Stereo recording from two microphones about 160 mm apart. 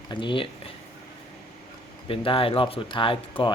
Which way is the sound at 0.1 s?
30° left (ahead or behind).